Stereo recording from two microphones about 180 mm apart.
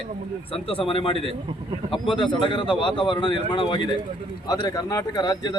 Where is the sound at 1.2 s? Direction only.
30° right (ahead or behind).